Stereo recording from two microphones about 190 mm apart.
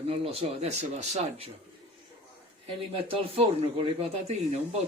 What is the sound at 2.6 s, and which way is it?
Speech, 30° right (ahead or behind).